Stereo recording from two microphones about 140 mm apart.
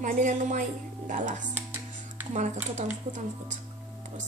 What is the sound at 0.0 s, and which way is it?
A woman's voice, 65° right (ahead or behind).